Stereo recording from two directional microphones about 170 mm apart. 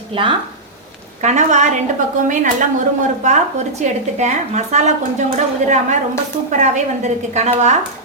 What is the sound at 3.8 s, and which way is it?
A woman's voice, 40° right (ahead or behind).